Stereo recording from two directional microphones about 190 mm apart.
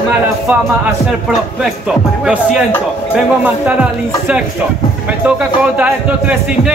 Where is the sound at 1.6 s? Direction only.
Centre (ahead or behind).